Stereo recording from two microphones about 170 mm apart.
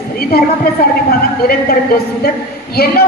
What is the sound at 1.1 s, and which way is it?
A man's voice, 60° left (ahead or behind).